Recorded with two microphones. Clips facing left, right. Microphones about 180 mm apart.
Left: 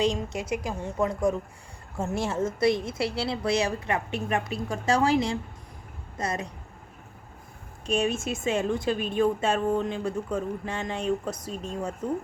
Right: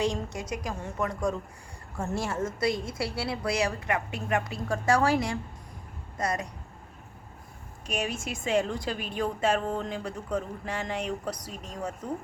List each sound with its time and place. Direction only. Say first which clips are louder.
0.0 s a woman's voice: left 3 dB; 20° left (ahead or behind)
7.9 s a woman's voice: left 6 dB; 25° left (ahead or behind)